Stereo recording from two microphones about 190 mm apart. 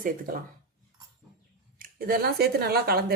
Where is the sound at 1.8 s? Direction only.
50° right (ahead or behind).